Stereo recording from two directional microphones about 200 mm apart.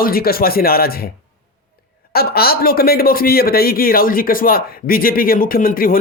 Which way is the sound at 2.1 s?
50° left (ahead or behind).